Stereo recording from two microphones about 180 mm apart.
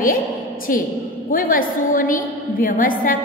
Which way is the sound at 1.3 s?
50° left (ahead or behind).